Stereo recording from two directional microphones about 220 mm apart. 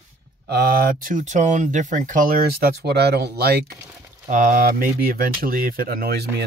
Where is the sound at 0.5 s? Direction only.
45° right (ahead or behind).